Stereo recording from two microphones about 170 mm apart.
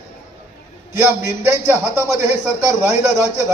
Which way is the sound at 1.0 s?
15° right (ahead or behind).